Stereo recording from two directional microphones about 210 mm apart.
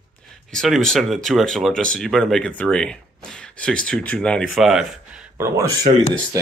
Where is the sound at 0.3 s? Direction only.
Centre (ahead or behind).